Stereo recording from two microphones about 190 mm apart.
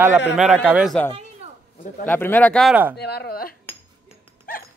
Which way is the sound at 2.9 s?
60° left (ahead or behind).